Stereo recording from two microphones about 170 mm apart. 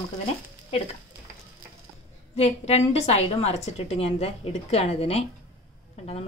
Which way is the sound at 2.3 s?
40° left (ahead or behind).